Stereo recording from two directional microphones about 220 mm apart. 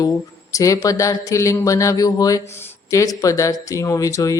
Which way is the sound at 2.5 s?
15° left (ahead or behind).